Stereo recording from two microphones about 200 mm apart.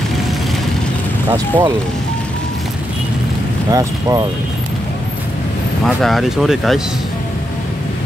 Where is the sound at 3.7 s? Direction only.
15° right (ahead or behind).